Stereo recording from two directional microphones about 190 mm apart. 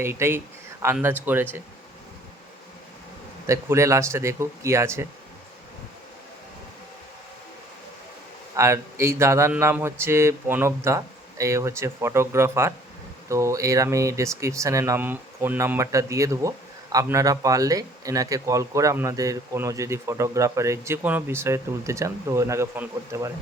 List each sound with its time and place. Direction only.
0.0 s speech: 15° right (ahead or behind)
3.4 s speech: 15° right (ahead or behind)
8.5 s speech: 15° right (ahead or behind)